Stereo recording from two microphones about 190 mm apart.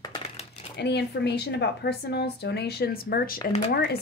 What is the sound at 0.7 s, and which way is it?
Speech, 60° left (ahead or behind).